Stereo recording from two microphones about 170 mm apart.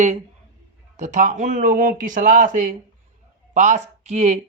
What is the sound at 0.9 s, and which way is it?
A man's voice, 45° right (ahead or behind).